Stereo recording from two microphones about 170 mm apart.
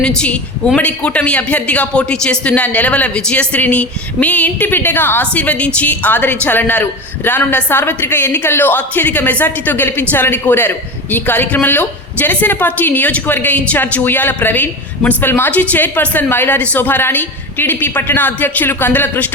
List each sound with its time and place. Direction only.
0.0 s a woman's voice: 5° left (ahead or behind)